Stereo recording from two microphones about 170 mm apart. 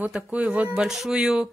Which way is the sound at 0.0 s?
5° right (ahead or behind).